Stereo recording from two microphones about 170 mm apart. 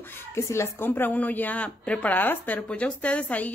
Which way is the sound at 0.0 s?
15° left (ahead or behind).